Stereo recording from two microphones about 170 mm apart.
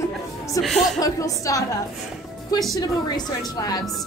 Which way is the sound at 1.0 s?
20° left (ahead or behind).